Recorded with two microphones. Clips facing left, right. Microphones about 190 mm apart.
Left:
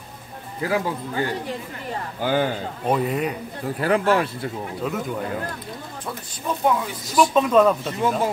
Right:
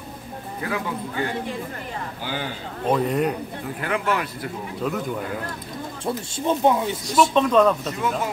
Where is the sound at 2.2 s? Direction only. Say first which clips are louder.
Left 10 dB; 50° left (ahead or behind).